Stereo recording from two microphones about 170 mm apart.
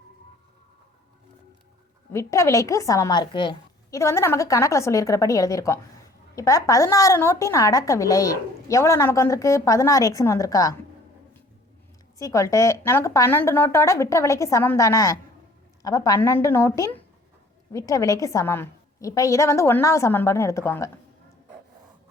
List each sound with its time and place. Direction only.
2.1 s a woman's voice: 15° left (ahead or behind)
12.2 s a woman's voice: 20° left (ahead or behind)